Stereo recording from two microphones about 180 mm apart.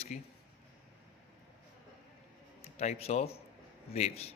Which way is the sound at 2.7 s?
35° left (ahead or behind).